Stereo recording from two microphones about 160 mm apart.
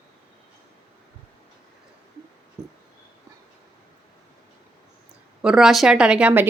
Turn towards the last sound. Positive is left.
turn(degrees=-10)  # may be behind; listen again after turning